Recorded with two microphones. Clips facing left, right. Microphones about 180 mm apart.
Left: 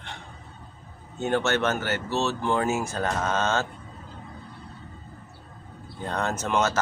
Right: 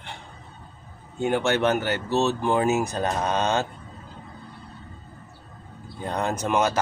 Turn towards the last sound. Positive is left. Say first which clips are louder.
# right 2 dB
turn(degrees=-15)  # may be behind; listen again after turning